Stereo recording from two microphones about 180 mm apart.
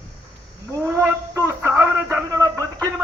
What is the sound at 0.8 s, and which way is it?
A man's voice, 15° right (ahead or behind).